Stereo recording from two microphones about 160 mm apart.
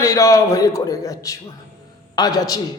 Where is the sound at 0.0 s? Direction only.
20° left (ahead or behind).